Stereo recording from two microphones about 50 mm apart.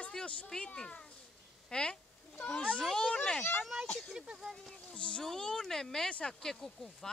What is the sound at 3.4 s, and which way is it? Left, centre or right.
Speech, left.